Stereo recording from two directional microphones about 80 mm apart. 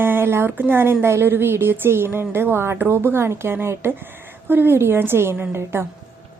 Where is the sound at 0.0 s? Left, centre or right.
Right.